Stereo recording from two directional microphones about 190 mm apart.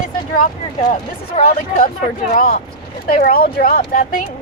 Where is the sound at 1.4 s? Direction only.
45° left (ahead or behind).